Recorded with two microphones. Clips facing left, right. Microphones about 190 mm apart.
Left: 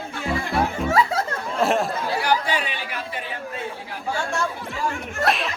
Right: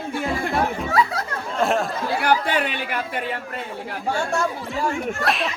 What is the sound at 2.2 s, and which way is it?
Chatter, 55° right (ahead or behind).